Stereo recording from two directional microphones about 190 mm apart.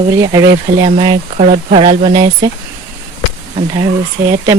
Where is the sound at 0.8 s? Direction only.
25° right (ahead or behind).